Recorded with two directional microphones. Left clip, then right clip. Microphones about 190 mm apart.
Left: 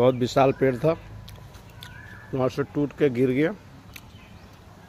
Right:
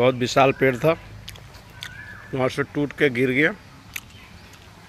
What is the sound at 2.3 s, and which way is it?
Speech, centre (ahead or behind).